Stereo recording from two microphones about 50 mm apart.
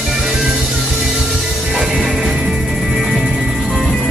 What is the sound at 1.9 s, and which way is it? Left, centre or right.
Music, centre.